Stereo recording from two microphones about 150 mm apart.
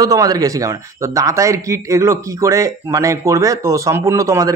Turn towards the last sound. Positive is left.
turn(degrees=-20)  # may be behind; listen again after turning